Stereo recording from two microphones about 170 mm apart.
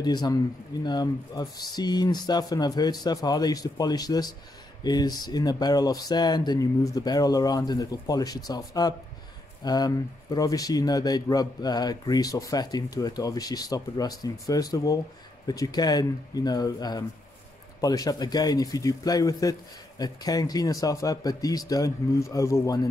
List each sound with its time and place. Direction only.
0.0 s speech: 25° left (ahead or behind)